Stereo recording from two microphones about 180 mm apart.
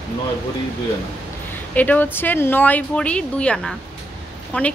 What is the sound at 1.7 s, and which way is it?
A woman's voice, 10° left (ahead or behind).